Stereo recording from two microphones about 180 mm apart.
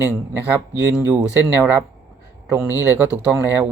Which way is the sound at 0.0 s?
15° right (ahead or behind).